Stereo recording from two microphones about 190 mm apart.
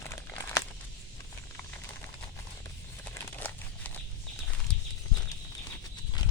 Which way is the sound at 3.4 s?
10° left (ahead or behind).